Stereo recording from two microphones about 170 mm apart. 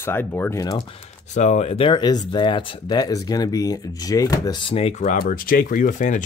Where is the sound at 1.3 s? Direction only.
45° left (ahead or behind).